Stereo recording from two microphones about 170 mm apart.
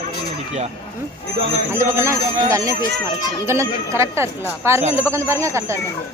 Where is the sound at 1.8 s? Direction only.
15° right (ahead or behind).